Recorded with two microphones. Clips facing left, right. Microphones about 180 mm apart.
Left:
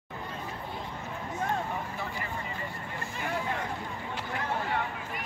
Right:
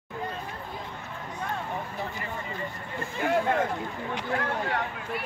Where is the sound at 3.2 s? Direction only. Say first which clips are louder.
Right 9 dB; 55° right (ahead or behind).